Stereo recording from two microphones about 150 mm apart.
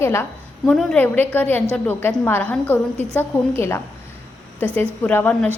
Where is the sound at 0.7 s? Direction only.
5° left (ahead or behind).